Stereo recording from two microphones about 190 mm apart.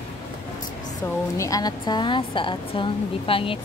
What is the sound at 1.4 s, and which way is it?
Speech, 20° left (ahead or behind).